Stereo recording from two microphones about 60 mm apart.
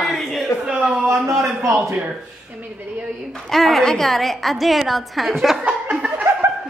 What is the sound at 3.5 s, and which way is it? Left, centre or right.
A woman's voice, centre.